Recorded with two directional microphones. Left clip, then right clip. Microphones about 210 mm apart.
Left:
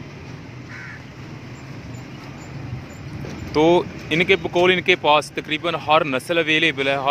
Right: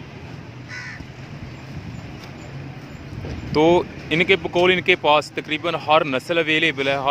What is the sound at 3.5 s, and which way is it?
Speech, centre (ahead or behind).